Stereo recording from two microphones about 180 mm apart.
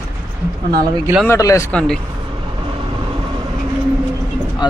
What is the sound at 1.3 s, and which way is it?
Speech, 15° left (ahead or behind).